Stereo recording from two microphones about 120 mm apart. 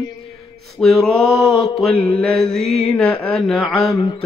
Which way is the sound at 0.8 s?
5° left (ahead or behind).